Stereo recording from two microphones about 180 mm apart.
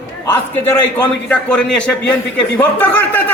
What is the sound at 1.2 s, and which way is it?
A man's voice, 5° left (ahead or behind).